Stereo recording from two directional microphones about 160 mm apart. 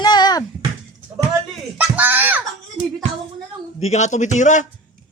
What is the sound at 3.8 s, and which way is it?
Speech, 45° left (ahead or behind).